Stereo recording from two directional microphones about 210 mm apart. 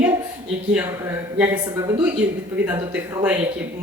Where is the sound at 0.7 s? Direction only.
10° right (ahead or behind).